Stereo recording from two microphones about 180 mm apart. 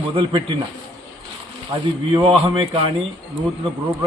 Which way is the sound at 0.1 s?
30° right (ahead or behind).